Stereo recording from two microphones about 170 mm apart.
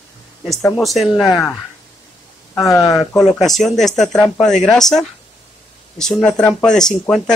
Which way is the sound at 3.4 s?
Centre (ahead or behind).